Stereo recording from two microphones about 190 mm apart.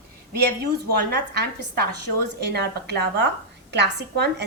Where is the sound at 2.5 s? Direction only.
60° right (ahead or behind).